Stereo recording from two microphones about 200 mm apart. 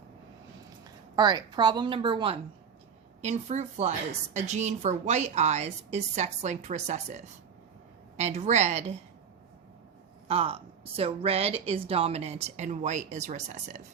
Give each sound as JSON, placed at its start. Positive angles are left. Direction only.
{"t": 0.9, "sound": "a woman's voice", "side_deg": -20}
{"t": 10.2, "sound": "a woman's voice", "side_deg": -30}